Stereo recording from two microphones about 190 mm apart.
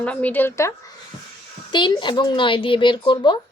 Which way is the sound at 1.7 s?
25° left (ahead or behind).